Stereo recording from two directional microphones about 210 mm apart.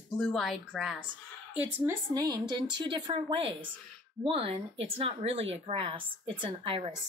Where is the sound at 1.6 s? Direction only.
15° right (ahead or behind).